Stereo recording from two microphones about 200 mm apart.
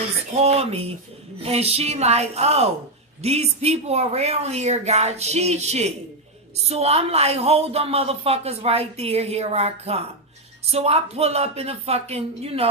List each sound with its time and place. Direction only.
0.3 s a woman's voice: 30° right (ahead or behind)